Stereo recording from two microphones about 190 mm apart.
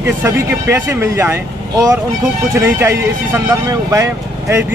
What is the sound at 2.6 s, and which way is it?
Speech, 10° right (ahead or behind).